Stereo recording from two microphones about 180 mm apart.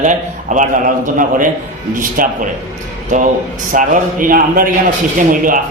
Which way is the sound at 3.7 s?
50° right (ahead or behind).